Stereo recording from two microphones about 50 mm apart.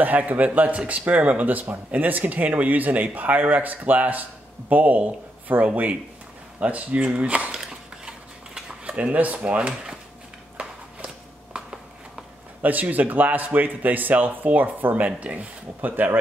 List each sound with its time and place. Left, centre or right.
0.0 s speech: right
6.6 s speech: right
9.0 s speech: right
9.4 s speech: right
12.6 s speech: right